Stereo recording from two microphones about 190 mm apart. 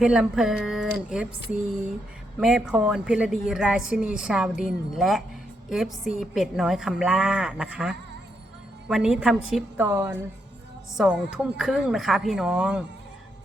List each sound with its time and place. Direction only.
0.0 s a woman's voice: 5° right (ahead or behind)
2.4 s a woman's voice: centre (ahead or behind)
9.8 s speech: 15° right (ahead or behind)
10.9 s a woman's voice: 5° right (ahead or behind)